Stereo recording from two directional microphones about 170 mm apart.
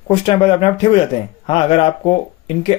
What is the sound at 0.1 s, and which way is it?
A man's voice, 35° left (ahead or behind).